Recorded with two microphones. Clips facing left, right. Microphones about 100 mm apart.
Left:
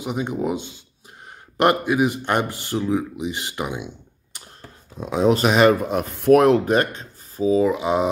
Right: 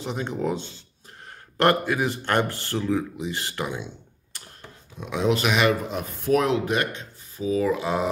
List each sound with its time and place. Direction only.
0.0 s speech: 15° left (ahead or behind)
4.9 s speech: 35° left (ahead or behind)
5.9 s speech: 65° left (ahead or behind); by 7.5 s 40° left (ahead or behind)
7.5 s speech: 20° left (ahead or behind)